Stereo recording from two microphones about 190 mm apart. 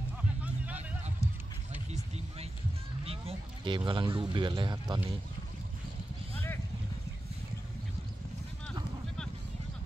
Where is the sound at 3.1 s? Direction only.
30° right (ahead or behind).